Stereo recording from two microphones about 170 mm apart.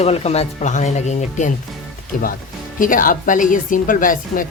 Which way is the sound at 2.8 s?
50° left (ahead or behind).